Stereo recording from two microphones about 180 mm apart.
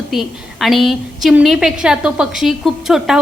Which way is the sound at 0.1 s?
Centre (ahead or behind).